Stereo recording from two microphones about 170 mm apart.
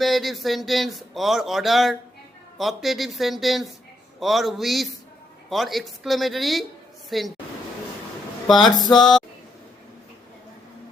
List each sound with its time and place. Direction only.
0.0 s speech: centre (ahead or behind)
8.5 s speech: 25° left (ahead or behind)
8.9 s speech: centre (ahead or behind)